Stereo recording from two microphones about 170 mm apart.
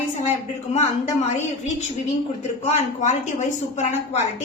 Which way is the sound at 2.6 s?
45° left (ahead or behind).